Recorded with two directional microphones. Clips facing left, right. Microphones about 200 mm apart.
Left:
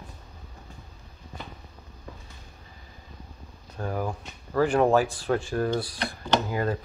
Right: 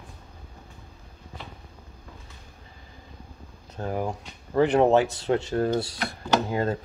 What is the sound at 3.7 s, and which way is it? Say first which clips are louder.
Speech: right 1 dB; 25° right (ahead or behind).